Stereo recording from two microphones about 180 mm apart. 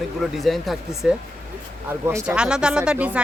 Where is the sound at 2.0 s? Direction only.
15° right (ahead or behind).